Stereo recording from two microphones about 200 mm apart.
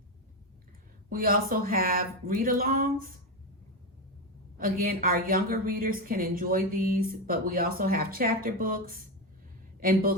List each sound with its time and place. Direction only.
1.1 s a woman's voice: 45° right (ahead or behind)
4.5 s a woman's voice: 45° right (ahead or behind)